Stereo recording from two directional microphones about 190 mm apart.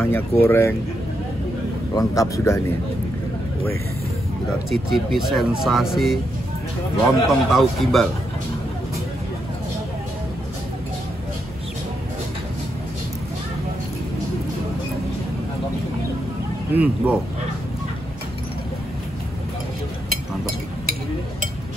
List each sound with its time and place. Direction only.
0.0 s speech: 10° left (ahead or behind)
2.0 s speech: 15° left (ahead or behind)
4.6 s speech: centre (ahead or behind)
7.2 s speech: centre (ahead or behind)
16.7 s speech: 5° right (ahead or behind)